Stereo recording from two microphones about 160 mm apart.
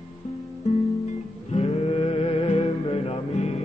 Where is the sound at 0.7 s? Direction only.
45° left (ahead or behind).